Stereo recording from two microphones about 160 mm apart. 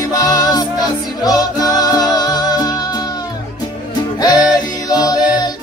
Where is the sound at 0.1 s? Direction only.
25° left (ahead or behind).